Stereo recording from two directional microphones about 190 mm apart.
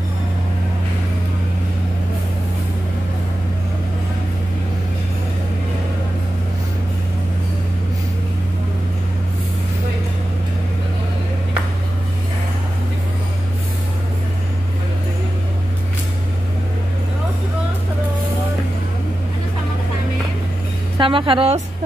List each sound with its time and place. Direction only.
21.0 s a woman's voice: 25° right (ahead or behind)